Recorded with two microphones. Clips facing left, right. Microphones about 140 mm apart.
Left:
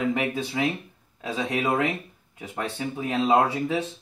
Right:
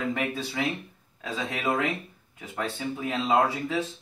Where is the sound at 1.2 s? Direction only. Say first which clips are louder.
Left 3 dB; 15° left (ahead or behind).